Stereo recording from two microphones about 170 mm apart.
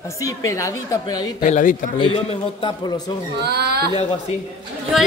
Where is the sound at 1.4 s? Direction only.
50° left (ahead or behind).